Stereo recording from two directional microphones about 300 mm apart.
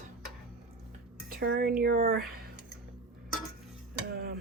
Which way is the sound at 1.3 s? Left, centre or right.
Right.